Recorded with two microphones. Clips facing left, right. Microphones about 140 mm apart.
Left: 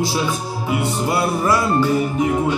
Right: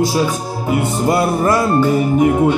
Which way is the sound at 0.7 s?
45° right (ahead or behind).